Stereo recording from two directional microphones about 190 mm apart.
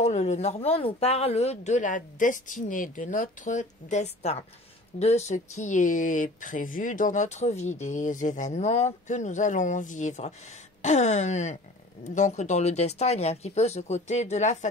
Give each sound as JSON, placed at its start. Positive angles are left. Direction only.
{"t": 0.0, "sound": "speech", "side_deg": 35}